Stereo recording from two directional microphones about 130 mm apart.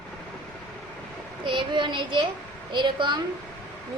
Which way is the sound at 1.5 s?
40° right (ahead or behind).